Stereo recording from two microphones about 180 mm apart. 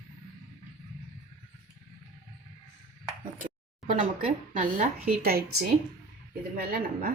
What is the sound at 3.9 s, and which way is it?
Speech, 40° right (ahead or behind).